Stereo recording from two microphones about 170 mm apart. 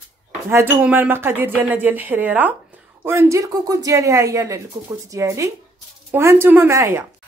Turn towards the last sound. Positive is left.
turn(degrees=-15)  # may be behind; listen again after turning